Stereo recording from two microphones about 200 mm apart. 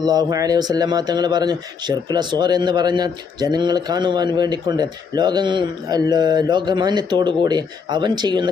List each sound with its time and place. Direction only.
0.0 s speech: 20° right (ahead or behind)